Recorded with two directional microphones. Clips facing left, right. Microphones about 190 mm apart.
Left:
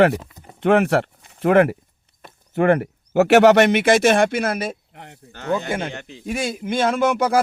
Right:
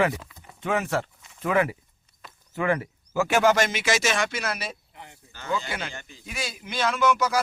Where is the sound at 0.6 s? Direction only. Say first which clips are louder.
Left 10 dB; 65° left (ahead or behind).